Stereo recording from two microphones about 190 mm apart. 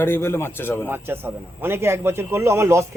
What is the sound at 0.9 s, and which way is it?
Speech, 10° right (ahead or behind).